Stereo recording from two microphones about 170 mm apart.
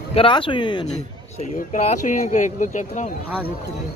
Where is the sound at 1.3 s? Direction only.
40° left (ahead or behind).